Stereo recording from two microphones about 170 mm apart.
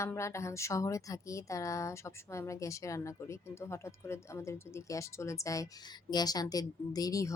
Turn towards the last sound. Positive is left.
turn(degrees=20)  # may be behind; listen again after turning